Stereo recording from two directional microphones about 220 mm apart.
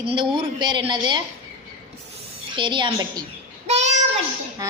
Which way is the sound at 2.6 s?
20° right (ahead or behind).